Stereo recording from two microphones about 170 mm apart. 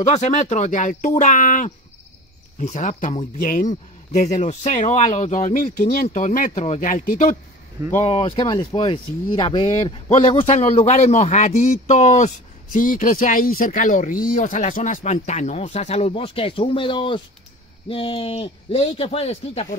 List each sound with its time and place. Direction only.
0.0 s speech: 45° left (ahead or behind)
8.0 s speech: 30° left (ahead or behind)